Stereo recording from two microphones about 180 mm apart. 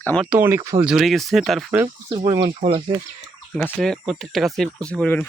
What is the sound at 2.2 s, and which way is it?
Speech, 25° right (ahead or behind).